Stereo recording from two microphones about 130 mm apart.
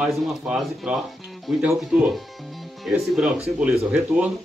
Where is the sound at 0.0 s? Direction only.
Centre (ahead or behind).